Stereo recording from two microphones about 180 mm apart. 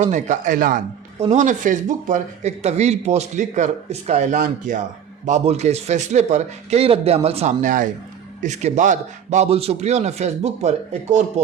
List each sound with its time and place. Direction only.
0.0 s speech: 45° right (ahead or behind)